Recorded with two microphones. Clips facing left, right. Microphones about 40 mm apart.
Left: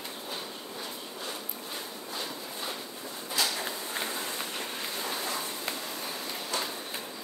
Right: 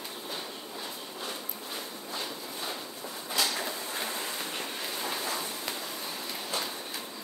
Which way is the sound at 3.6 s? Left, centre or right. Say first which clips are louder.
Even; centre.